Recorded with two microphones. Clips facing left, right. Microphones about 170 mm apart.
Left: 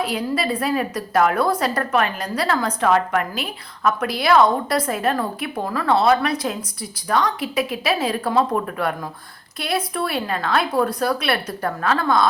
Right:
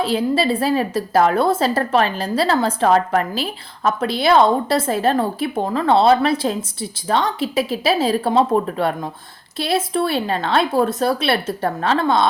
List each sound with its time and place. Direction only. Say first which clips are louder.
0.0 s a woman's voice: right 5 dB; 30° right (ahead or behind)